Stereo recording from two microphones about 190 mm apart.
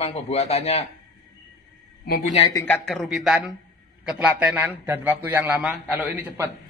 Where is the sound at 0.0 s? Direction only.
35° left (ahead or behind).